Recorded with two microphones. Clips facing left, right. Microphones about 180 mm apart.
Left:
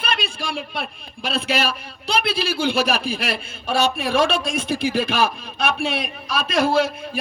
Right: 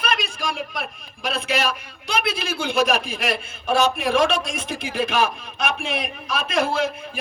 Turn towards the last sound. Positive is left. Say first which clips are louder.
# left 4 dB
turn(degrees=35)  # may be behind; listen again after turning